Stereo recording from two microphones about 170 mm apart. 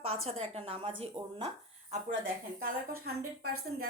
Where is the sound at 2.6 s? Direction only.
65° right (ahead or behind).